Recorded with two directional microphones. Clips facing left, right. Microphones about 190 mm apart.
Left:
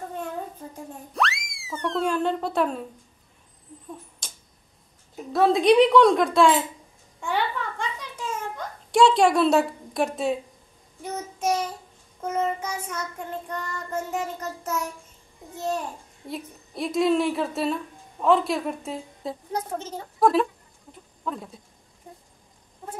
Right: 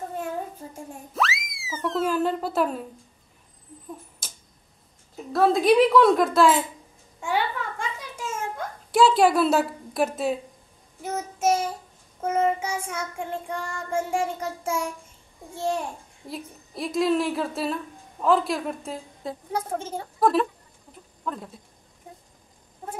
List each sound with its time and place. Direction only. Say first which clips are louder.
1.1 s a sound: even; centre (ahead or behind)
4.2 s tick-tock: even; 5° right (ahead or behind)
5.3 s a woman's voice: left 1 dB; centre (ahead or behind)
7.2 s a sound: right 1 dB; 10° right (ahead or behind)
11.0 s child singing: right 2 dB; 5° right (ahead or behind)
16.3 s a woman's voice: left 1 dB; centre (ahead or behind)